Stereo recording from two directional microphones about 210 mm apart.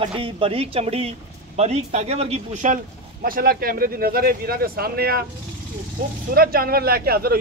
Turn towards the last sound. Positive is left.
turn(degrees=-45)  # may be behind; listen again after turning